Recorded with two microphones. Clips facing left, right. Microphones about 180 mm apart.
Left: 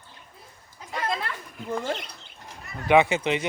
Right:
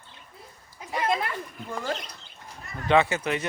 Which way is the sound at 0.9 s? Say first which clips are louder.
Right 3 dB; 20° right (ahead or behind).